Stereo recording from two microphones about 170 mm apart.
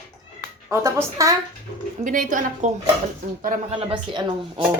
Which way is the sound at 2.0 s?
50° right (ahead or behind).